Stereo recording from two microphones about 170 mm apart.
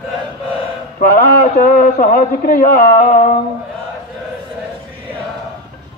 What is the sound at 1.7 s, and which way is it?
A man's voice, 60° left (ahead or behind).